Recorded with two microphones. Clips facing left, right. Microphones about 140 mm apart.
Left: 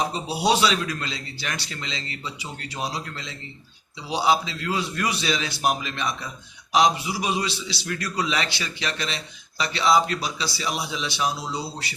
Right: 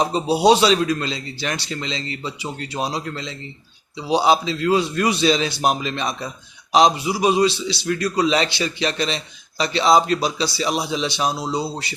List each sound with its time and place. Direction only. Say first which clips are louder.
0.1 s a man's voice: right 8 dB; 25° right (ahead or behind)